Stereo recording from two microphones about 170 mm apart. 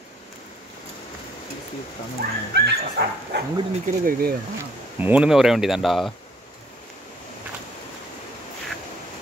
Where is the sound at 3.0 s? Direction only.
70° right (ahead or behind).